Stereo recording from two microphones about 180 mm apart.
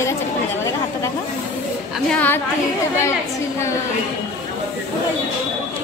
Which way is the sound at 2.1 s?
10° left (ahead or behind).